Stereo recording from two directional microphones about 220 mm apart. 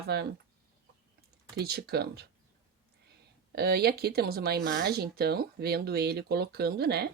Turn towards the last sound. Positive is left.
turn(degrees=-45)  # may be behind; listen again after turning